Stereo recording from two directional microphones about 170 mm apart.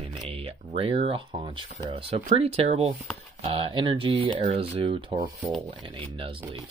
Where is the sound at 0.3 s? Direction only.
35° right (ahead or behind).